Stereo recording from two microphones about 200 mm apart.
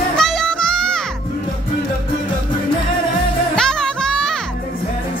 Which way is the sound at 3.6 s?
5° left (ahead or behind).